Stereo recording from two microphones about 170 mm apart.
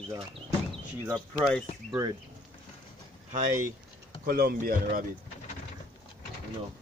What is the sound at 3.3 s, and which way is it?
Speech, 50° right (ahead or behind).